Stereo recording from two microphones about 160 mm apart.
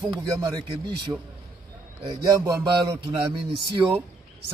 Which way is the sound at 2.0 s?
25° right (ahead or behind).